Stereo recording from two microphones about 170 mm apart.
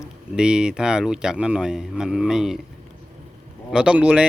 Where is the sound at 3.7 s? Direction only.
5° right (ahead or behind).